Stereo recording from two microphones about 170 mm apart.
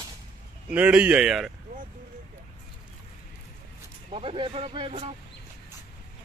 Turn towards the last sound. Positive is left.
turn(degrees=-35)  # may be behind; listen again after turning